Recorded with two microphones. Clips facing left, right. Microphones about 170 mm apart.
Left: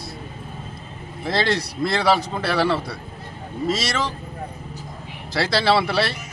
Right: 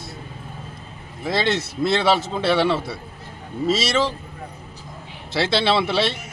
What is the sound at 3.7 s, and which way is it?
Speech, 30° right (ahead or behind).